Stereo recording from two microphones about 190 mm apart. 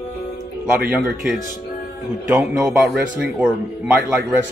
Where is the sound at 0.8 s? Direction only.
10° right (ahead or behind).